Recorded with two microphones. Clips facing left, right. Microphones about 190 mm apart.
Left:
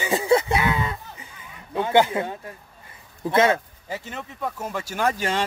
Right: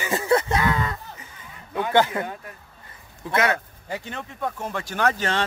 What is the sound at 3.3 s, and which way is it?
Speech, 25° left (ahead or behind).